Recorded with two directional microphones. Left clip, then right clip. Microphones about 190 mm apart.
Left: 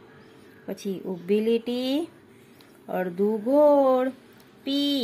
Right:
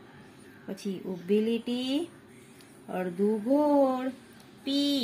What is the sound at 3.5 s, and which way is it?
A woman's voice, 20° left (ahead or behind).